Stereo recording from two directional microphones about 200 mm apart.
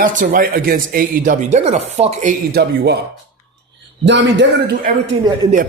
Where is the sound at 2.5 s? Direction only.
55° right (ahead or behind).